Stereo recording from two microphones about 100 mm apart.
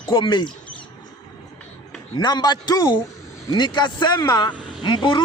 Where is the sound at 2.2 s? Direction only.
45° left (ahead or behind).